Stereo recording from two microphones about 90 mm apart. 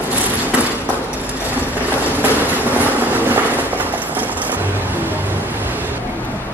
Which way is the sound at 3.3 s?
20° right (ahead or behind).